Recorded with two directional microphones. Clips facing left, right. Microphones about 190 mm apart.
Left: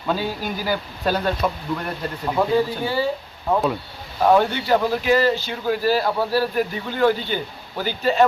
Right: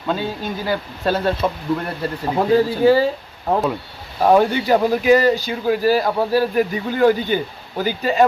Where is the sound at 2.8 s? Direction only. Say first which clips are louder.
Right 9 dB; 90° right.